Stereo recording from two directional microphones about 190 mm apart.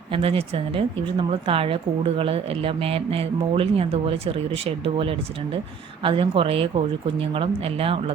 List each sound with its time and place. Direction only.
0.1 s a woman's voice: 30° right (ahead or behind)